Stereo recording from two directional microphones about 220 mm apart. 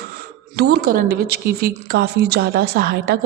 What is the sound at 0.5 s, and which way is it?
A woman's voice, 50° right (ahead or behind).